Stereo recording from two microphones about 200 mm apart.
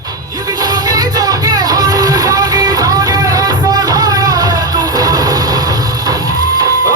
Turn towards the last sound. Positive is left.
turn(degrees=-20)  # may be behind; listen again after turning